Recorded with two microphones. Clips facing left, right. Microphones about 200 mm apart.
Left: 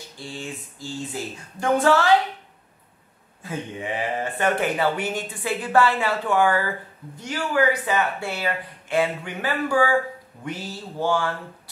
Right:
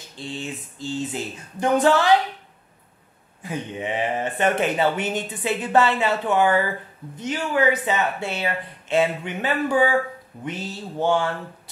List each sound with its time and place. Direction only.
0.2 s speech: 20° right (ahead or behind)
3.4 s speech: 20° right (ahead or behind)